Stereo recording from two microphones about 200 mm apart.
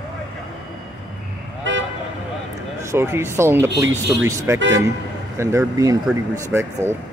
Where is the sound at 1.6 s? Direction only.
65° right (ahead or behind).